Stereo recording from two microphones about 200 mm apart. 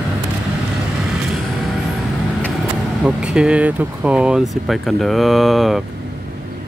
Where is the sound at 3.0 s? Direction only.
5° right (ahead or behind).